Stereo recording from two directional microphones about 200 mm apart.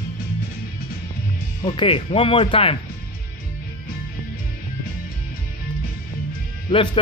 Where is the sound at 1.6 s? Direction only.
25° left (ahead or behind).